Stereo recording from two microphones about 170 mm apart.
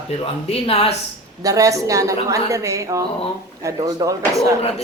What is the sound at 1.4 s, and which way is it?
A woman's voice, 20° right (ahead or behind).